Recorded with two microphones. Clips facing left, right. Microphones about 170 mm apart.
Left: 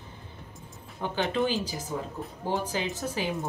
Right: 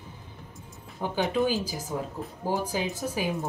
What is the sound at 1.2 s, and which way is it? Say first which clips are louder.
Speech: right 2 dB; 5° right (ahead or behind).